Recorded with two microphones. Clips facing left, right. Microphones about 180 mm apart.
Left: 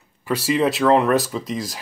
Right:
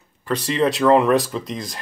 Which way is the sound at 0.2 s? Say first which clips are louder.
Left 1 dB; 5° left (ahead or behind).